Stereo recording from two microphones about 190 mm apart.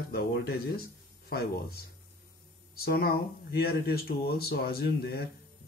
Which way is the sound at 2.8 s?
55° left (ahead or behind).